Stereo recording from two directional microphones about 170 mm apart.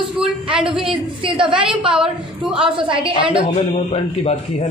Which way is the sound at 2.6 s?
30° right (ahead or behind).